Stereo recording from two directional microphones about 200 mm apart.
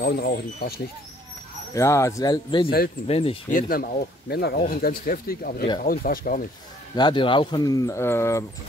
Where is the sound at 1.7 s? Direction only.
15° left (ahead or behind).